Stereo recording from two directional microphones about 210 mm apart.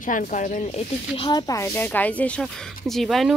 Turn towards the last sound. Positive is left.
turn(degrees=0)  # may be behind; listen again after turning